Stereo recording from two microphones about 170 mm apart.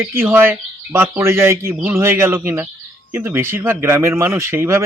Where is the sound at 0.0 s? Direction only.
15° right (ahead or behind).